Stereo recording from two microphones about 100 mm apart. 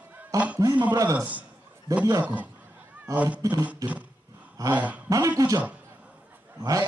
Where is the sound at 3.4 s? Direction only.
45° right (ahead or behind).